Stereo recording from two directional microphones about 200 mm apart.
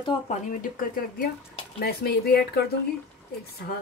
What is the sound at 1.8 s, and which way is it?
Speech, 50° left (ahead or behind).